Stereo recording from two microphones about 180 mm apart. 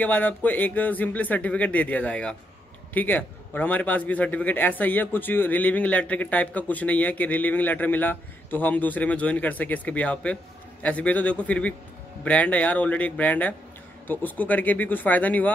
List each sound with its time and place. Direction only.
0.0 s a man's voice: 10° left (ahead or behind)